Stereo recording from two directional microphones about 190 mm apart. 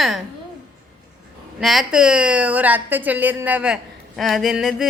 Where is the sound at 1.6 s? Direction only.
Centre (ahead or behind).